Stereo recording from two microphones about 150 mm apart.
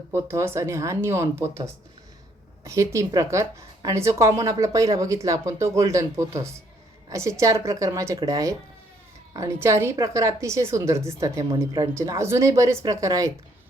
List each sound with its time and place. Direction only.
0.1 s speech: 15° right (ahead or behind)
2.6 s a woman's voice: 20° right (ahead or behind)